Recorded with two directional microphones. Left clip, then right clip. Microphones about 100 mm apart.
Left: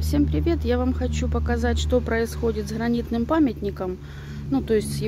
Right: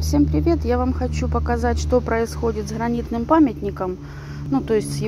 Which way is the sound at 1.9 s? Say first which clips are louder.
Right 3 dB; 45° left (ahead or behind).